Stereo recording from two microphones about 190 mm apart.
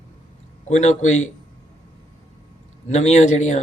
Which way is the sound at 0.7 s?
40° left (ahead or behind).